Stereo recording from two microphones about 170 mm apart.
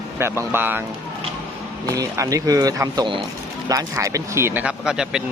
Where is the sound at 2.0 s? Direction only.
20° right (ahead or behind).